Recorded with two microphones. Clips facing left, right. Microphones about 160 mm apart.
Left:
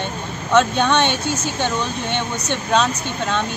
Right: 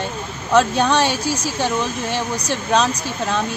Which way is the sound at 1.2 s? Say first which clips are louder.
Right 1 dB; 25° left (ahead or behind).